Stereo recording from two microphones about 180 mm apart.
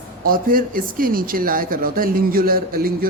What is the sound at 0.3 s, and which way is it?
Speech, 50° right (ahead or behind).